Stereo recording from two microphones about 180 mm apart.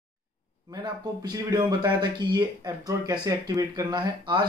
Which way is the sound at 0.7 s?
20° right (ahead or behind).